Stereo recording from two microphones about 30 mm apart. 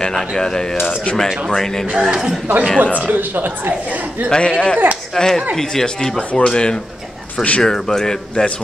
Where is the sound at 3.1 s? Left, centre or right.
Right.